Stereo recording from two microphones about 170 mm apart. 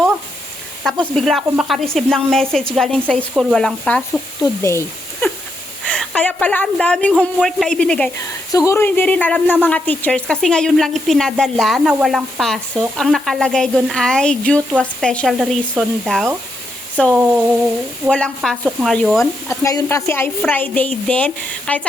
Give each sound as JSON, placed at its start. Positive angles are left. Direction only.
{"t": 1.1, "sound": "a woman's voice", "side_deg": 0}
{"t": 8.5, "sound": "a woman's voice", "side_deg": 15}
{"t": 19.2, "sound": "a woman's voice", "side_deg": 20}